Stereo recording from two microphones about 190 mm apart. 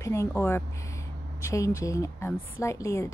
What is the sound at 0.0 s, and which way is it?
Speech, 15° left (ahead or behind).